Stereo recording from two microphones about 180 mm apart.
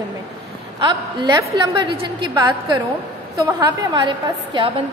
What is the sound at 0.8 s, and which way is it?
A woman's voice, 25° right (ahead or behind).